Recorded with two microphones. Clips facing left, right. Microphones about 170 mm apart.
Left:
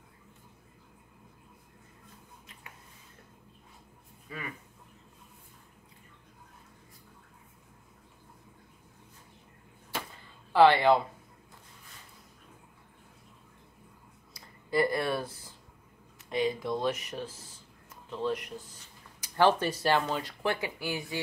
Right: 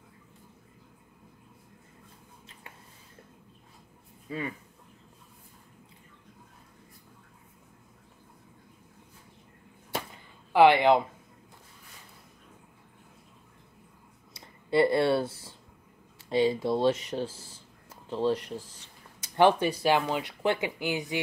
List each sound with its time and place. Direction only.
4.3 s speech: 25° right (ahead or behind)
10.5 s speech: 15° right (ahead or behind)
14.3 s a sound: 25° right (ahead or behind)
16.2 s speech: 30° right (ahead or behind)
19.2 s speech: 20° right (ahead or behind)